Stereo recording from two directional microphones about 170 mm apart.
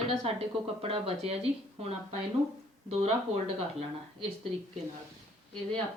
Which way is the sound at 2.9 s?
40° right (ahead or behind).